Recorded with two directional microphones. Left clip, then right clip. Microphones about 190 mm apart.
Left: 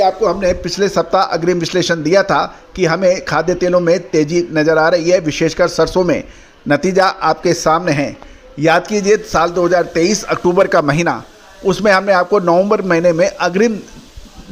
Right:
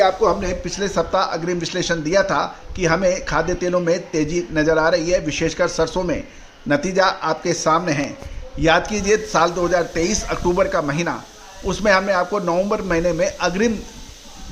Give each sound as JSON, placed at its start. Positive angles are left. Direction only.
{"t": 0.2, "sound": "a man's voice", "side_deg": 30}
{"t": 8.6, "sound": "a man's voice", "side_deg": 25}
{"t": 11.6, "sound": "a man's voice", "side_deg": 35}